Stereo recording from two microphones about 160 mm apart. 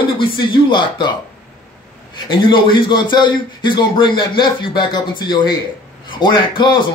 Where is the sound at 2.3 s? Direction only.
30° left (ahead or behind).